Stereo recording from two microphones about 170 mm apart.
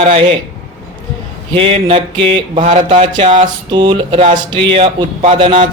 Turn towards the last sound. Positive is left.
turn(degrees=-30)  # may be behind; listen again after turning